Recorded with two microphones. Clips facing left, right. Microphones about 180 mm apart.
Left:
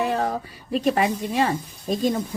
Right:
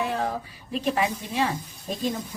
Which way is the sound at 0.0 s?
40° left (ahead or behind).